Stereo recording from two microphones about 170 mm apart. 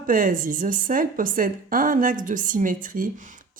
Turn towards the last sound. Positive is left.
turn(degrees=-50)  # may be behind; listen again after turning